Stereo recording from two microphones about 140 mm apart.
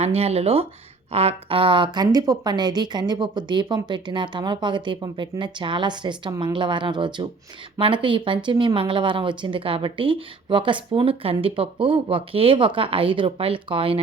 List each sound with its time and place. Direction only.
0.0 s a woman's voice: 50° right (ahead or behind)